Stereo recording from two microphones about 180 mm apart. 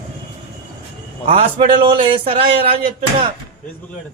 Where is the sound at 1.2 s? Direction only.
35° right (ahead or behind).